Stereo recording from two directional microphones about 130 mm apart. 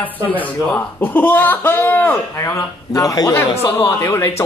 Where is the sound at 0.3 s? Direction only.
10° left (ahead or behind).